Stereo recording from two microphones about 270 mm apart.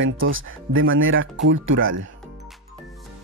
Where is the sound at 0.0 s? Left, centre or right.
Right.